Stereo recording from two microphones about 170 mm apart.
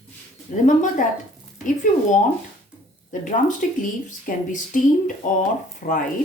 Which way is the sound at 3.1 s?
50° left (ahead or behind).